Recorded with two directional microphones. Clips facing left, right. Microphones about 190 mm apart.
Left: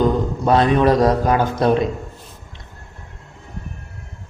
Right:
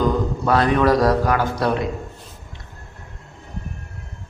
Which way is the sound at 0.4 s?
20° left (ahead or behind).